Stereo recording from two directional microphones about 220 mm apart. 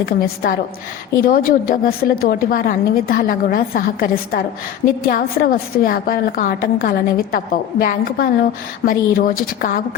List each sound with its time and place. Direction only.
0.0 s a woman's voice: 40° left (ahead or behind)